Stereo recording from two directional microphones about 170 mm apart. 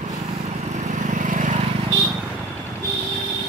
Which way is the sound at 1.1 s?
50° right (ahead or behind).